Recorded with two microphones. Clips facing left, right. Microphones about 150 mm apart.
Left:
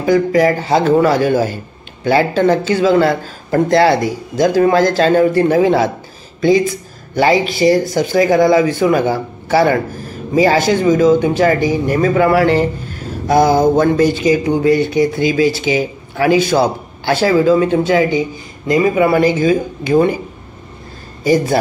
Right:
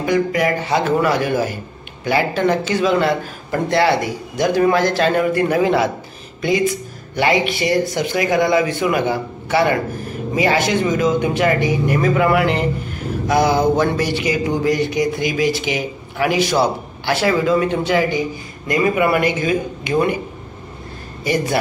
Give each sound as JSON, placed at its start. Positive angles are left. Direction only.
{"t": 0.0, "sound": "speech", "side_deg": 30}
{"t": 7.2, "sound": "speech", "side_deg": 35}
{"t": 13.4, "sound": "mantra", "side_deg": 45}
{"t": 14.2, "sound": "speech", "side_deg": 25}
{"t": 21.2, "sound": "speech", "side_deg": 35}